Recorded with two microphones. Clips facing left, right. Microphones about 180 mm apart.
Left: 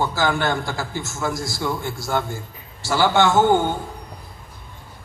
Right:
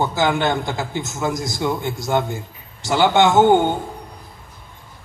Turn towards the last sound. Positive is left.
turn(degrees=-20)  # may be behind; listen again after turning